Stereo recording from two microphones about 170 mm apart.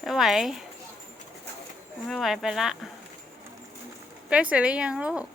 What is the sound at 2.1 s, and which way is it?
Speech, centre (ahead or behind).